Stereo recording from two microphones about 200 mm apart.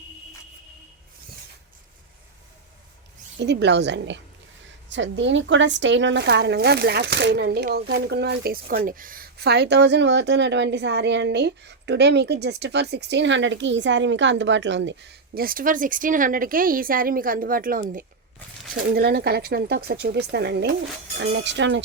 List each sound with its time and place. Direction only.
3.3 s speech: 60° right (ahead or behind)